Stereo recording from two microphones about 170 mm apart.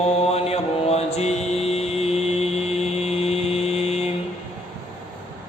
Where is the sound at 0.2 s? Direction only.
35° left (ahead or behind).